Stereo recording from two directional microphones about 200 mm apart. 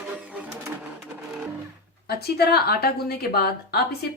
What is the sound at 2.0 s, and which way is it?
A woman's voice, 50° left (ahead or behind).